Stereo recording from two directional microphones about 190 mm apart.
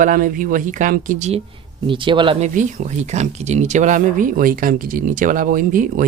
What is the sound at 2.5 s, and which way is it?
Speech, 40° right (ahead or behind).